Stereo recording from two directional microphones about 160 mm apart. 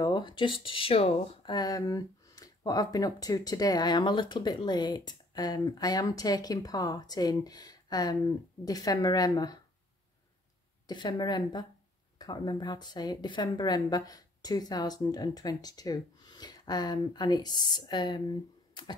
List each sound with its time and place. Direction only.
0.0 s speech: 30° left (ahead or behind)
1.5 s speech: 25° left (ahead or behind)
10.9 s speech: 25° left (ahead or behind)